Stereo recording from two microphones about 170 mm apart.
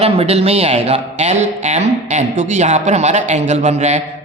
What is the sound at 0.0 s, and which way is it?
A man's voice, 35° right (ahead or behind).